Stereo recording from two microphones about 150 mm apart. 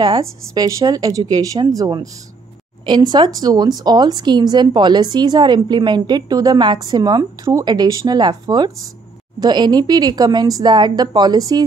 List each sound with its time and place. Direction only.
0.0 s a woman's voice: 25° right (ahead or behind)